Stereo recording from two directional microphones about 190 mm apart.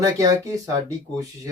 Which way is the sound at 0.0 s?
15° right (ahead or behind).